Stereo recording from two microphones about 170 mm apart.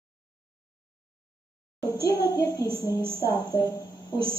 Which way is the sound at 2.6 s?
15° right (ahead or behind).